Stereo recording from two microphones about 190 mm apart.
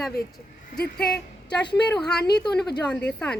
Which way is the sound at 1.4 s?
25° left (ahead or behind).